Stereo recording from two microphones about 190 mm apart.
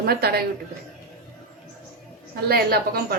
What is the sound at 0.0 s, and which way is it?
Speech, 55° right (ahead or behind).